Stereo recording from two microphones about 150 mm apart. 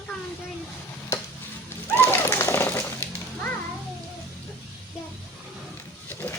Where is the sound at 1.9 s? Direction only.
15° left (ahead or behind).